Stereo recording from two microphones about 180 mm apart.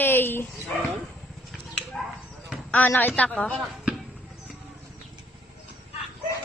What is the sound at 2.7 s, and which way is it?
Speech, 10° left (ahead or behind).